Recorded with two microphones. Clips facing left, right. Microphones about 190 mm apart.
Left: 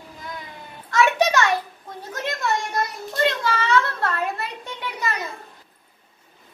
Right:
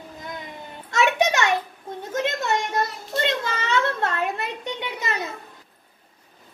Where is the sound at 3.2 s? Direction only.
20° right (ahead or behind).